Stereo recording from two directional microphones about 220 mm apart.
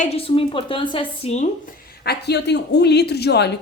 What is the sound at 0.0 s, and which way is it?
A woman's voice, 25° left (ahead or behind).